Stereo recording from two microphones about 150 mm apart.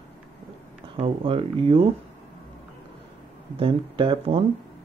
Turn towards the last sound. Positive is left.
turn(degrees=-35)  # may be behind; listen again after turning